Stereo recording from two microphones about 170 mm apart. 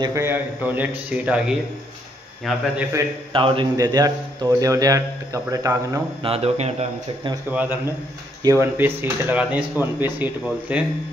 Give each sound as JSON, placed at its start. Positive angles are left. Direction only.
{"t": 0.0, "sound": "speech", "side_deg": -15}
{"t": 3.3, "sound": "speech", "side_deg": -30}
{"t": 6.2, "sound": "speech", "side_deg": -35}
{"t": 7.5, "sound": "speech", "side_deg": -10}